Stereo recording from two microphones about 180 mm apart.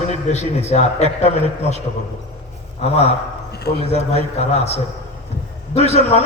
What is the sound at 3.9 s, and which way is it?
Speech, 35° left (ahead or behind).